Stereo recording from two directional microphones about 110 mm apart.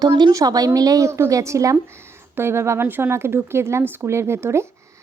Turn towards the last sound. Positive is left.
turn(degrees=-25)  # may be behind; listen again after turning